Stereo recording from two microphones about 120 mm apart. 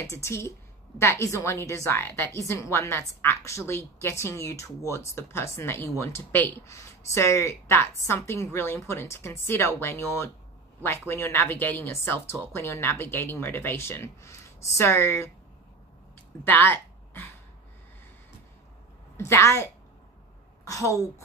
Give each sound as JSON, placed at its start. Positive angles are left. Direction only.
{"t": 0.0, "sound": "a woman's voice", "side_deg": 25}
{"t": 16.4, "sound": "speech", "side_deg": 15}
{"t": 19.1, "sound": "a woman's voice", "side_deg": 25}